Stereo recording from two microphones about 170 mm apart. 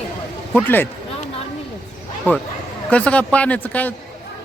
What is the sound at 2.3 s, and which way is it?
Speech, 10° left (ahead or behind).